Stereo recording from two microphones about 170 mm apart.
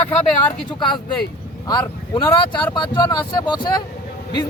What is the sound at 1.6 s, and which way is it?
Speech, 25° left (ahead or behind).